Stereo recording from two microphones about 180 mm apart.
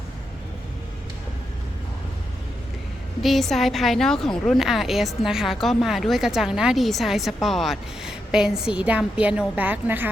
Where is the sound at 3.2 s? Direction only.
Centre (ahead or behind).